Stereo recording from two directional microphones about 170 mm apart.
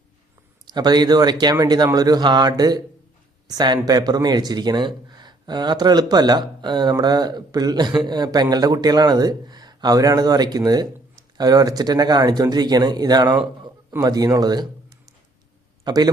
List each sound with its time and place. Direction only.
0.7 s speech: 25° right (ahead or behind)
15.8 s a man's voice: 25° right (ahead or behind)